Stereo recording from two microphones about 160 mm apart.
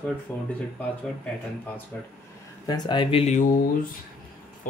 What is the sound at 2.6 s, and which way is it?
Speech, 25° left (ahead or behind).